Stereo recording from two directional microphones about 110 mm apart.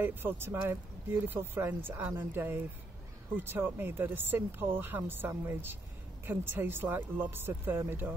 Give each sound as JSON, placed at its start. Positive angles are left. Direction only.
{"t": 0.0, "sound": "speech", "side_deg": -20}